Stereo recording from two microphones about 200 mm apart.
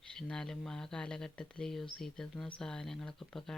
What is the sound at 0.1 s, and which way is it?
Speech, 5° left (ahead or behind).